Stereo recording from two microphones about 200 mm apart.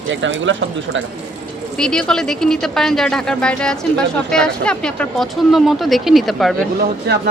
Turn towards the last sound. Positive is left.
turn(degrees=-50)  # may be behind; listen again after turning